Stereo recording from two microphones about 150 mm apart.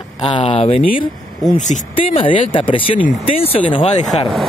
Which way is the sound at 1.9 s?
35° left (ahead or behind).